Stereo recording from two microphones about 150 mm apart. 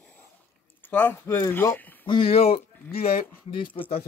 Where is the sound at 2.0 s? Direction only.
35° left (ahead or behind).